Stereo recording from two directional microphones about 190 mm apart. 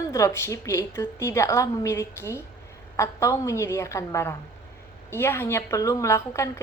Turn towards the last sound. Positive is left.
turn(degrees=15)  # may be behind; listen again after turning